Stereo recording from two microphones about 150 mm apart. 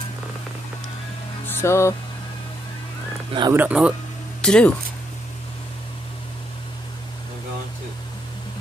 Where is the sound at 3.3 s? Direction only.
30° right (ahead or behind).